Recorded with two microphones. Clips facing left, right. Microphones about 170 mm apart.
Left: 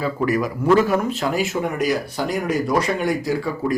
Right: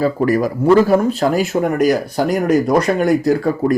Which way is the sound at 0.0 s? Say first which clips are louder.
Right 6 dB; 40° right (ahead or behind).